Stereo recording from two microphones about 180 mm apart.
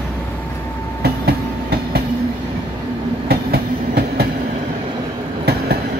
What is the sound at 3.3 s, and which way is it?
Train, 60° right (ahead or behind).